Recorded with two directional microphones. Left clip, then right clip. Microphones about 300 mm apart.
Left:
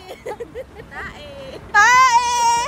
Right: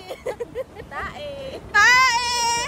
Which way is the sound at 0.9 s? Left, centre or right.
Right.